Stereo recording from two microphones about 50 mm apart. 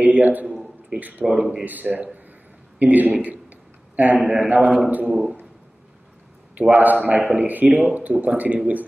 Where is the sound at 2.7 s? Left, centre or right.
Right.